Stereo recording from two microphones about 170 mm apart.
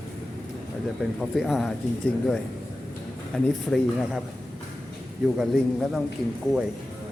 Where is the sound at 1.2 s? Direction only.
Centre (ahead or behind).